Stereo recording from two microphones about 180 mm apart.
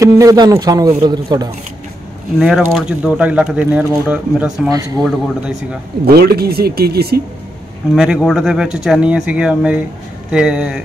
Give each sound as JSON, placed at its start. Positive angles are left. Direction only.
{"t": 0.0, "sound": "a man's voice", "side_deg": -20}
{"t": 2.3, "sound": "speech", "side_deg": -5}
{"t": 4.6, "sound": "a man's voice", "side_deg": -20}
{"t": 6.0, "sound": "speech", "side_deg": -60}
{"t": 7.9, "sound": "speech", "side_deg": 0}